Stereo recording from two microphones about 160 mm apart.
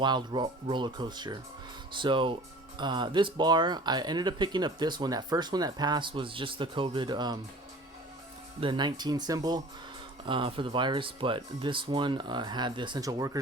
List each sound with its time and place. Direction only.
0.0 s speech: 30° right (ahead or behind)
8.6 s speech: 30° right (ahead or behind)